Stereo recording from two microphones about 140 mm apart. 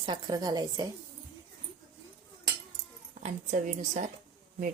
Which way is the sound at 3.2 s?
60° right (ahead or behind).